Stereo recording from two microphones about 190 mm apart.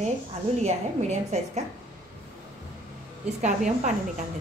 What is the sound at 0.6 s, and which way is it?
A woman's voice, 35° right (ahead or behind).